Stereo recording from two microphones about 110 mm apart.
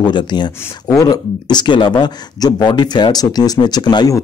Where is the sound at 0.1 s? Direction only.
45° left (ahead or behind).